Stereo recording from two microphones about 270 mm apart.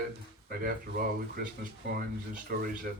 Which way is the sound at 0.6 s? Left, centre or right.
Right.